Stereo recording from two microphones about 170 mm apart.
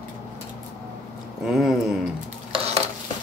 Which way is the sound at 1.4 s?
Centre (ahead or behind).